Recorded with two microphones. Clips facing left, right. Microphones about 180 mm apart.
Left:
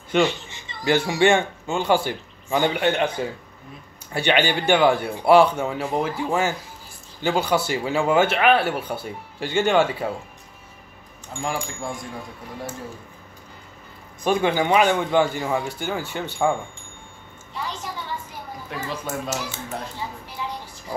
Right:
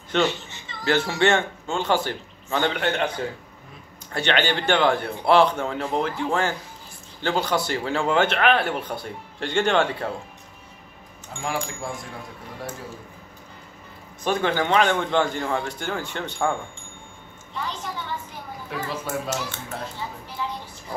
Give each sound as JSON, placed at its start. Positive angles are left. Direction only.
{"t": 0.1, "sound": "speech", "side_deg": 10}
{"t": 4.1, "sound": "speech", "side_deg": 10}
{"t": 11.4, "sound": "speech", "side_deg": -5}
{"t": 14.2, "sound": "speech", "side_deg": 15}
{"t": 18.7, "sound": "speech", "side_deg": 5}
{"t": 20.4, "sound": "a sound", "side_deg": 15}